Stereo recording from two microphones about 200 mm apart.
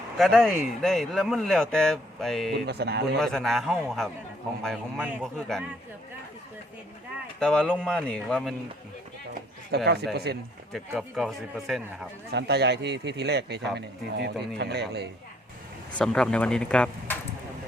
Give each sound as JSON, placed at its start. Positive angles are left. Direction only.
{"t": 0.2, "sound": "speech", "side_deg": 0}
{"t": 2.5, "sound": "a man's voice", "side_deg": -55}
{"t": 3.2, "sound": "speech", "side_deg": 0}
{"t": 7.3, "sound": "speech", "side_deg": 5}
{"t": 9.7, "sound": "a man's voice", "side_deg": -55}
{"t": 10.7, "sound": "speech", "side_deg": 0}
{"t": 12.3, "sound": "a man's voice", "side_deg": -55}
{"t": 16.0, "sound": "speech", "side_deg": 5}